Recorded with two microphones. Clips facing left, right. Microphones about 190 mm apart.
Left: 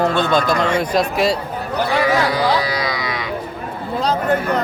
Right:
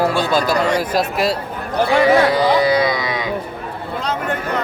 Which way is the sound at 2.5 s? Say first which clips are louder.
Right 5 dB; 25° right (ahead or behind).